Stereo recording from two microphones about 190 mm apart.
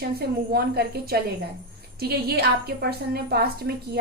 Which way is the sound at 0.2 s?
55° right (ahead or behind).